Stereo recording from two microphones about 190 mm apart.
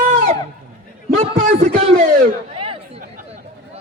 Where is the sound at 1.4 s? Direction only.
35° right (ahead or behind).